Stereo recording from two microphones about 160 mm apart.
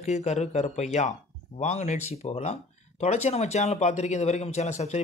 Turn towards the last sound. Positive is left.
turn(degrees=45)  # may be behind; listen again after turning